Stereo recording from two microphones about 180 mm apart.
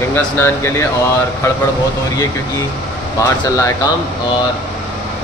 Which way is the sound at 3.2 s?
15° left (ahead or behind).